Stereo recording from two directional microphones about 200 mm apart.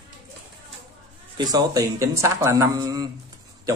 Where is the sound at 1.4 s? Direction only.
20° right (ahead or behind).